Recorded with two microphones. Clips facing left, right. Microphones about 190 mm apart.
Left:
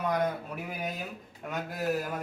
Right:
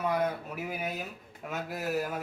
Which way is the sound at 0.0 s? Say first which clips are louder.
Even; 5° right (ahead or behind).